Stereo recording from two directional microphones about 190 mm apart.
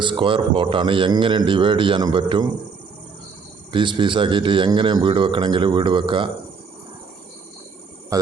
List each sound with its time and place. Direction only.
0.0 s a man's voice: 25° right (ahead or behind)
3.7 s a man's voice: 25° right (ahead or behind)
8.1 s speech: 20° right (ahead or behind)